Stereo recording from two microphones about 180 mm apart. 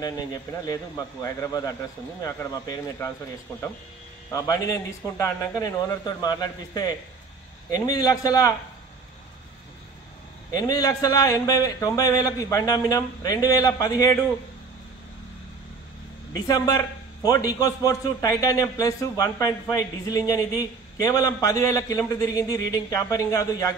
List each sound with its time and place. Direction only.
0.0 s a man's voice: 20° left (ahead or behind)
4.3 s a man's voice: 20° left (ahead or behind)
10.5 s a man's voice: 20° left (ahead or behind)
16.3 s a man's voice: 20° left (ahead or behind)